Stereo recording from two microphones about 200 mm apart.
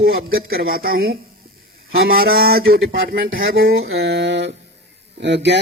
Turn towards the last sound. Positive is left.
turn(degrees=-60)  # may be behind; listen again after turning